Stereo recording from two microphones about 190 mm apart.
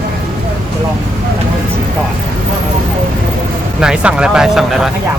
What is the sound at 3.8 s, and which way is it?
Speech, 5° right (ahead or behind).